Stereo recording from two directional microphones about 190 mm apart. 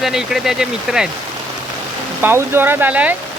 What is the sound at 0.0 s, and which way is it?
Speech, centre (ahead or behind).